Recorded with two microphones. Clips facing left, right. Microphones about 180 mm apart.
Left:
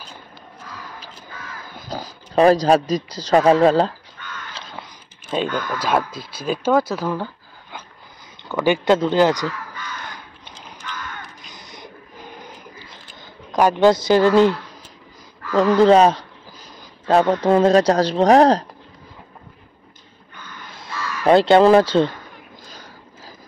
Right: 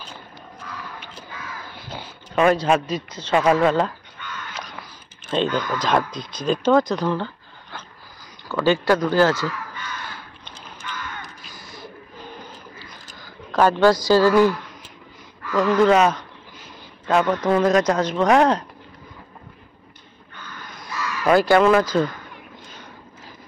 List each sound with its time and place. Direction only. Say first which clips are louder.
1.7 s speech: left 5 dB; 40° left (ahead or behind)
4.6 s biting: even; 25° left (ahead or behind)
5.3 s speech: right 1 dB; 10° left (ahead or behind)
8.5 s speech: left 2 dB; 15° left (ahead or behind)
11.5 s a sound: right 1 dB; 20° left (ahead or behind)
15.5 s speech: left 3 dB; 30° left (ahead or behind)
20.7 s speech: even; 25° left (ahead or behind)
22.7 s vehicle: even; 35° left (ahead or behind)